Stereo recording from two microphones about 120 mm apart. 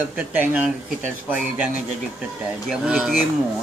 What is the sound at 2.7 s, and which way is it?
Speech, centre (ahead or behind).